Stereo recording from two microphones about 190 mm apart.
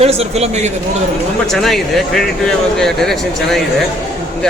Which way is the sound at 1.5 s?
Centre (ahead or behind).